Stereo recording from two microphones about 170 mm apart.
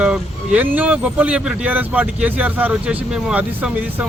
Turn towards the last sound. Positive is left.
turn(degrees=-10)  # may be behind; listen again after turning